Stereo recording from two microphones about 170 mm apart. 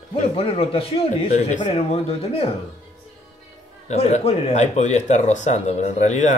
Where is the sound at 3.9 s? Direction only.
35° left (ahead or behind).